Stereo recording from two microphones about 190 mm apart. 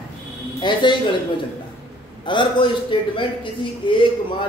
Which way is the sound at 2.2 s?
25° left (ahead or behind).